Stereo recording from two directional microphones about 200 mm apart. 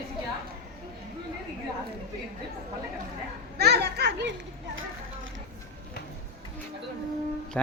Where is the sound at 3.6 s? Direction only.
55° right (ahead or behind).